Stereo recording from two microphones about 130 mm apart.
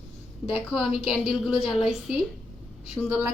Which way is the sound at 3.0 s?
20° right (ahead or behind).